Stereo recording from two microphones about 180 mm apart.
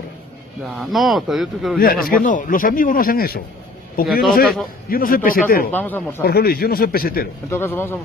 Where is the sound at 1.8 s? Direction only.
55° left (ahead or behind).